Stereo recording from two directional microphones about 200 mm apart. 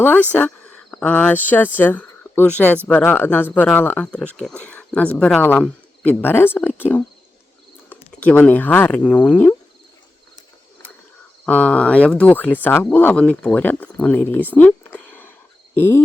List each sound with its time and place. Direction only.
0.0 s speech: 10° left (ahead or behind)
11.4 s speech: 5° left (ahead or behind)